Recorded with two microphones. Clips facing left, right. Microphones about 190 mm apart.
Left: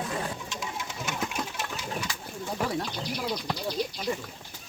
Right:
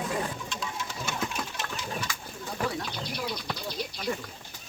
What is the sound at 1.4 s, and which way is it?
Engine, 25° left (ahead or behind).